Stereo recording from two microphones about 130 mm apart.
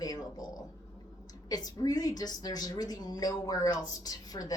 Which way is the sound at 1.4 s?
30° left (ahead or behind).